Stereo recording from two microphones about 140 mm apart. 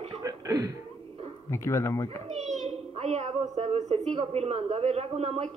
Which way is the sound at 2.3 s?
55° right (ahead or behind).